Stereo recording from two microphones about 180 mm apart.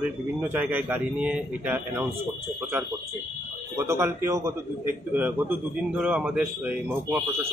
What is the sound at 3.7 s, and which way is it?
Speech, 15° right (ahead or behind).